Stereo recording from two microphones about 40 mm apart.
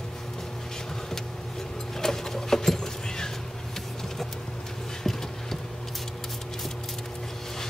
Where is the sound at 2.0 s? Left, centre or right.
Centre.